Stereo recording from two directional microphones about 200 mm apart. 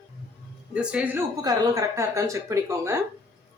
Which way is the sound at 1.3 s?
20° right (ahead or behind).